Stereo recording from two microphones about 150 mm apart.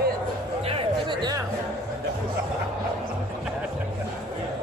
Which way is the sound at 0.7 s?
35° right (ahead or behind).